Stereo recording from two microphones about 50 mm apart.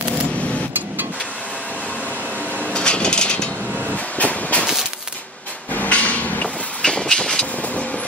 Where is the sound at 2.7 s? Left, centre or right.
Centre.